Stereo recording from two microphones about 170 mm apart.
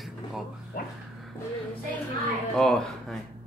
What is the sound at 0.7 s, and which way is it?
Speech, 60° left (ahead or behind).